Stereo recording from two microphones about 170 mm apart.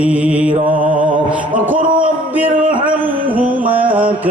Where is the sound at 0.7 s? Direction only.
50° right (ahead or behind).